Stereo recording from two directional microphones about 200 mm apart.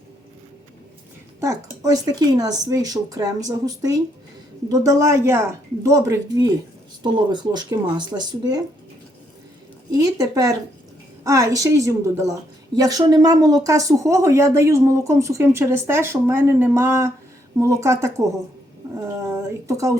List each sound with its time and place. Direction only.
1.4 s a woman's voice: 15° right (ahead or behind)
9.9 s a woman's voice: 20° right (ahead or behind)
18.9 s a sound: 10° right (ahead or behind)